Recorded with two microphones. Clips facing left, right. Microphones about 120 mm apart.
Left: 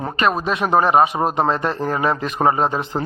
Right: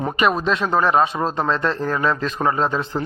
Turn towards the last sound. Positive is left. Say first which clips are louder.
# left 1 dB
turn(degrees=15)  # may be behind; listen again after turning